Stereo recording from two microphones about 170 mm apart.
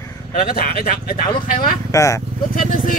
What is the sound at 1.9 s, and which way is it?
Speech, 20° left (ahead or behind).